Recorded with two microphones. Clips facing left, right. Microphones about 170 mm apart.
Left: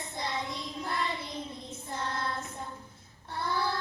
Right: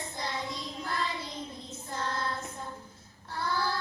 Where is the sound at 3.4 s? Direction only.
20° left (ahead or behind).